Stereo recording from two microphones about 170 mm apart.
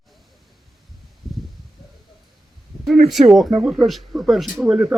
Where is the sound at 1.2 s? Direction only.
Centre (ahead or behind).